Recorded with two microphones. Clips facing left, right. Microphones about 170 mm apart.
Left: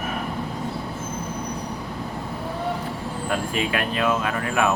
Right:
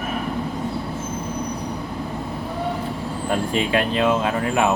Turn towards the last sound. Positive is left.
turn(degrees=-25)  # may be behind; listen again after turning